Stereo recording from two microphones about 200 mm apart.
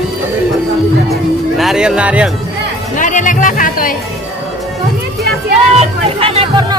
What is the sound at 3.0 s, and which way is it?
Music, 40° left (ahead or behind).